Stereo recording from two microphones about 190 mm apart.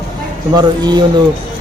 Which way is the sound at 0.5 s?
20° right (ahead or behind).